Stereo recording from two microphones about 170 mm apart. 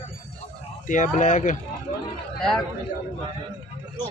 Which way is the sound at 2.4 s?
Centre (ahead or behind).